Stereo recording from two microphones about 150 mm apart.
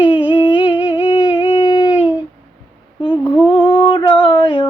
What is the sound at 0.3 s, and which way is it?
Humming, 30° left (ahead or behind).